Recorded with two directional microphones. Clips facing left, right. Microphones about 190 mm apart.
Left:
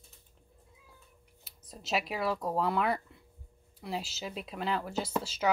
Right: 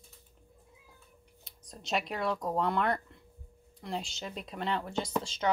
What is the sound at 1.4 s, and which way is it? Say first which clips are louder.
Speech: left 1 dB; 5° left (ahead or behind).